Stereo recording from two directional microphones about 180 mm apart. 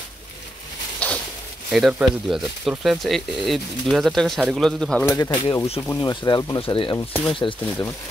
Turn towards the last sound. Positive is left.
turn(degrees=30)  # may be behind; listen again after turning